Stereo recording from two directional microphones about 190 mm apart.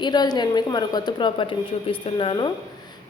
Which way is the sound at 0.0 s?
20° left (ahead or behind).